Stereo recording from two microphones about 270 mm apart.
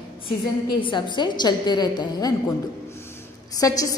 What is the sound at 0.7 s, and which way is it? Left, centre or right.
A woman's voice, centre.